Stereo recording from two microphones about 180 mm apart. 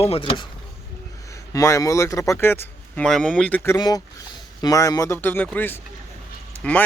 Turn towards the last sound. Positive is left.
turn(degrees=5)  # may be behind; listen again after turning